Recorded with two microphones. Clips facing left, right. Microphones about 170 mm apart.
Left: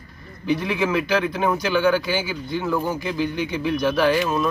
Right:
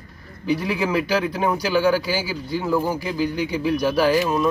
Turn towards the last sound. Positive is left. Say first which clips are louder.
# right 1 dB
turn(degrees=-10)  # may be behind; listen again after turning